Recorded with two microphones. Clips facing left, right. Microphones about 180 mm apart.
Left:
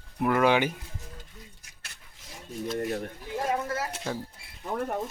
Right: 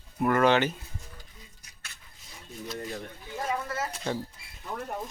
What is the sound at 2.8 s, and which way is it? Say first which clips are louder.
Speech: left 6 dB; 60° left (ahead or behind).